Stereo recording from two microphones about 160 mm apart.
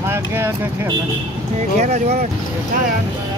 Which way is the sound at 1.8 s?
50° right (ahead or behind).